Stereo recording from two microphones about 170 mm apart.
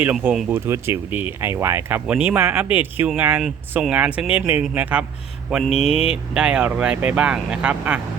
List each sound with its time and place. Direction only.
0.5 s speech: 15° right (ahead or behind)
5.5 s mantra: 5° right (ahead or behind)
5.7 s speech: 35° left (ahead or behind)
6.3 s speech: 5° right (ahead or behind)